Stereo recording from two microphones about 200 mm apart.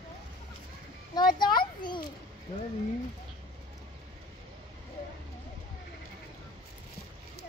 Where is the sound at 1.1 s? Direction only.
20° left (ahead or behind).